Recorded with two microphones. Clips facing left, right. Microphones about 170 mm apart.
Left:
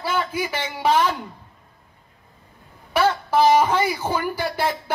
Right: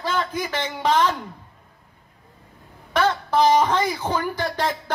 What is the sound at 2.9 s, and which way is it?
Speech, 10° left (ahead or behind).